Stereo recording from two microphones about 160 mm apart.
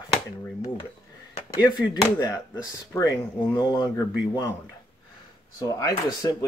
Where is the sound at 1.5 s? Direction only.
25° left (ahead or behind).